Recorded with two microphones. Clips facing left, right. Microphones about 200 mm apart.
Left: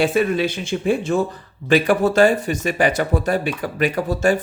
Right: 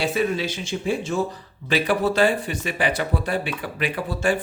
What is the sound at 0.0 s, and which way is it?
Speech, 55° left (ahead or behind).